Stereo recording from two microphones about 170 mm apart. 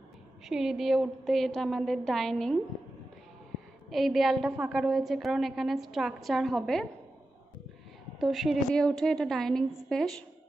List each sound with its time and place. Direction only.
0.5 s a woman's voice: 5° right (ahead or behind)
3.9 s a woman's voice: centre (ahead or behind)
8.2 s a woman's voice: centre (ahead or behind)